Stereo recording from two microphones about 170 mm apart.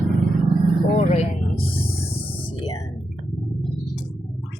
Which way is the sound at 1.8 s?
35° left (ahead or behind).